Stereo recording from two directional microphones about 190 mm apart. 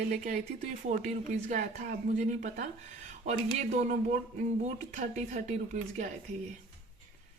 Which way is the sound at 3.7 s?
40° right (ahead or behind).